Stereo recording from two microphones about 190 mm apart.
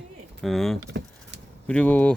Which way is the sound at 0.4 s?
Centre (ahead or behind).